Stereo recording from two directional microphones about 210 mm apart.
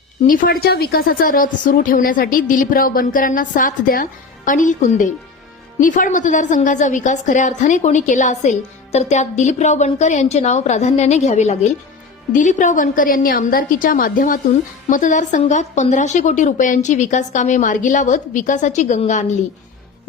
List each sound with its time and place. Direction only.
0.3 s a woman's voice: 40° left (ahead or behind)